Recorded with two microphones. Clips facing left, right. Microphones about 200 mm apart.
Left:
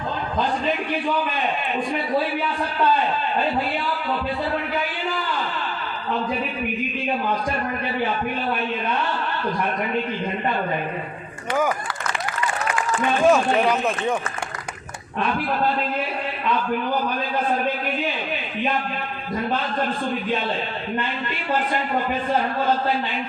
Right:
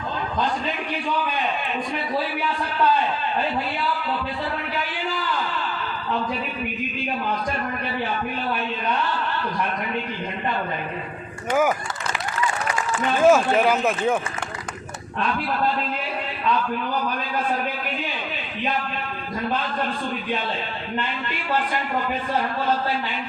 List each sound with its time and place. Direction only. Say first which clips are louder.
13.2 s speech: right 2 dB; 5° right (ahead or behind)